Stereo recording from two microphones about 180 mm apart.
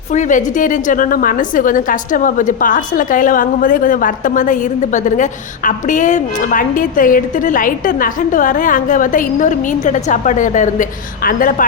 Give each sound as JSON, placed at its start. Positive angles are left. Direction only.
{"t": 0.1, "sound": "a woman's voice", "side_deg": 45}